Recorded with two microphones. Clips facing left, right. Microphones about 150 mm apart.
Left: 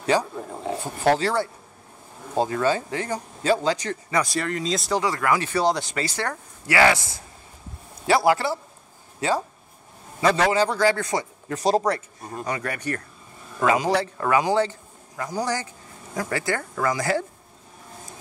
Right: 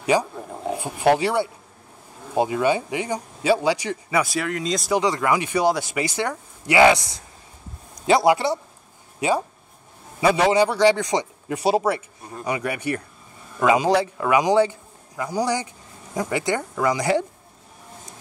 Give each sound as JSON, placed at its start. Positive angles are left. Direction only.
{"t": 0.0, "sound": "a man's voice", "side_deg": -10}
{"t": 4.9, "sound": "a man's voice", "side_deg": -20}